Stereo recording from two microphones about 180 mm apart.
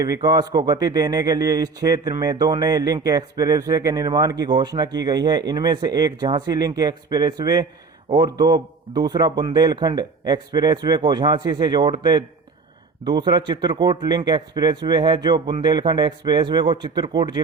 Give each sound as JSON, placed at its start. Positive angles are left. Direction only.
{"t": 0.0, "sound": "speech", "side_deg": -20}